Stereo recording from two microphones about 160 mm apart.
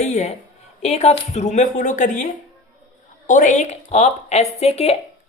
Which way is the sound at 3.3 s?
50° left (ahead or behind).